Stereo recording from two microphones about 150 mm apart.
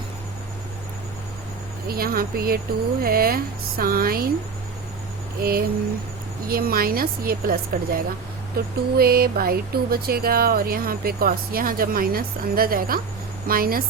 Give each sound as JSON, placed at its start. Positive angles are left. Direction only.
{"t": 1.9, "sound": "speech", "side_deg": -85}
{"t": 5.4, "sound": "speech", "side_deg": -85}